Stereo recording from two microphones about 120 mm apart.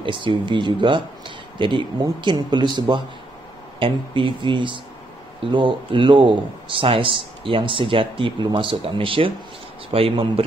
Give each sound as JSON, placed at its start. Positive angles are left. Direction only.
{"t": 0.0, "sound": "speech", "side_deg": -45}